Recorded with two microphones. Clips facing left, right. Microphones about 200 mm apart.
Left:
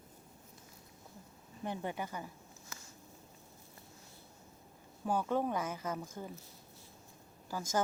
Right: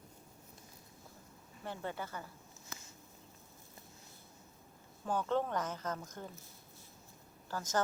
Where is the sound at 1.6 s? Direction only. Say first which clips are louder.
Left 3 dB; 15° left (ahead or behind).